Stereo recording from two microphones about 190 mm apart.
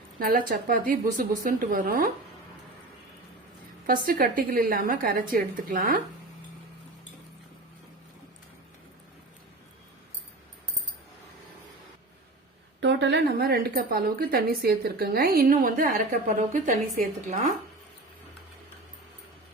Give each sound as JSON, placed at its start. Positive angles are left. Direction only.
{"t": 0.2, "sound": "speech", "side_deg": -45}
{"t": 3.8, "sound": "speech", "side_deg": -45}
{"t": 12.8, "sound": "speech", "side_deg": -65}